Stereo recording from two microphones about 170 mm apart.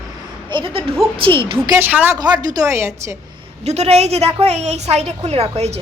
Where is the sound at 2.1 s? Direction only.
25° right (ahead or behind).